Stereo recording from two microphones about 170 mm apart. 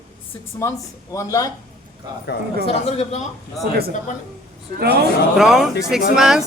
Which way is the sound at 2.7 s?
40° left (ahead or behind).